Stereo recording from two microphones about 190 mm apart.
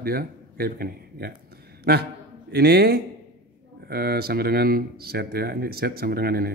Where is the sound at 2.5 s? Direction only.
55° right (ahead or behind).